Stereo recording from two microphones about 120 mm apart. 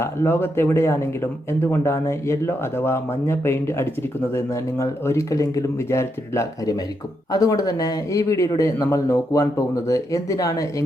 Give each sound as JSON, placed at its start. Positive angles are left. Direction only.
{"t": 0.0, "sound": "speech", "side_deg": 20}